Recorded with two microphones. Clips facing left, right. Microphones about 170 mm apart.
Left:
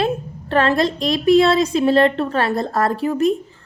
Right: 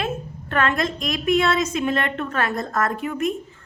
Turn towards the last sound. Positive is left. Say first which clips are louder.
# left 6 dB
turn(degrees=35)  # may be behind; listen again after turning